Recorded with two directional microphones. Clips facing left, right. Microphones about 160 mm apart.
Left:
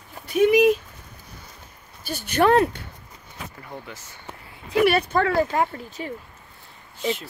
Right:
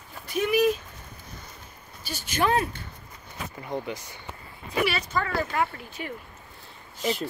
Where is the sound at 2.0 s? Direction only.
55° left (ahead or behind).